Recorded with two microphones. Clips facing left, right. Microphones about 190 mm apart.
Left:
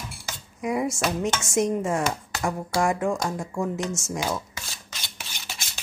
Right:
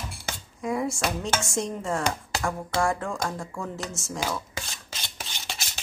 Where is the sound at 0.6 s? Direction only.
20° left (ahead or behind).